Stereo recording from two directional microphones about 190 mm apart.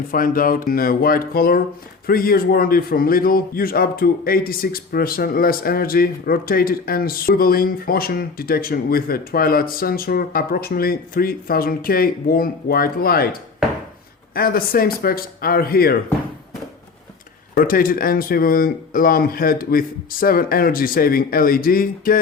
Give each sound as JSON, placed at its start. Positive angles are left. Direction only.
{"t": 0.1, "sound": "a man's voice", "side_deg": 50}
{"t": 14.3, "sound": "a man's voice", "side_deg": 50}
{"t": 17.5, "sound": "a man's voice", "side_deg": 50}